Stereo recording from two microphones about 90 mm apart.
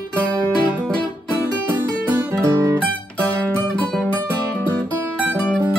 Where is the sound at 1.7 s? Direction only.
35° right (ahead or behind).